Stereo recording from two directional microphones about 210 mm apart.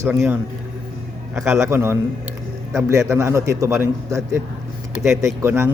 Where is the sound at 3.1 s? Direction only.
15° right (ahead or behind).